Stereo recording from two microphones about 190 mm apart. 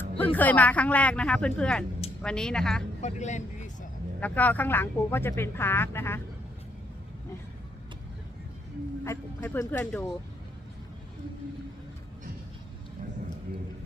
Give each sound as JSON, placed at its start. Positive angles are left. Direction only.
{"t": 0.3, "sound": "a woman's voice", "side_deg": 10}
{"t": 3.0, "sound": "speech", "side_deg": 40}
{"t": 4.2, "sound": "speech", "side_deg": 10}
{"t": 9.0, "sound": "speech", "side_deg": 10}